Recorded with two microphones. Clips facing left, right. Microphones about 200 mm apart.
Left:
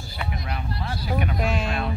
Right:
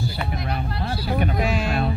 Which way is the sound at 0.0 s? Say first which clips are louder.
Right 5 dB; 70° right (ahead or behind).